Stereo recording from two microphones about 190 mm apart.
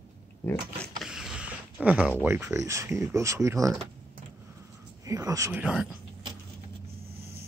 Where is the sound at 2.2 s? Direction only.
10° right (ahead or behind).